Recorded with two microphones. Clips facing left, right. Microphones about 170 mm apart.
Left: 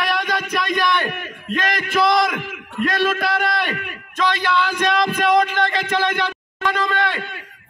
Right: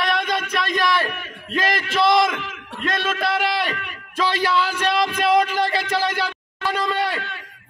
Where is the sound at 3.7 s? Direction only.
55° left (ahead or behind).